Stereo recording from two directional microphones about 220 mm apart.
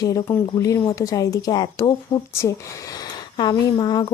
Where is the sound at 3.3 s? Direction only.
20° left (ahead or behind).